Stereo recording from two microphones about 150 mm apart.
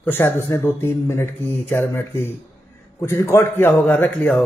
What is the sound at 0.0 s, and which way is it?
A man's voice, 15° left (ahead or behind).